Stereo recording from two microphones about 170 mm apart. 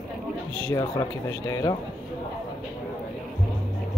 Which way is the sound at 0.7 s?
20° left (ahead or behind).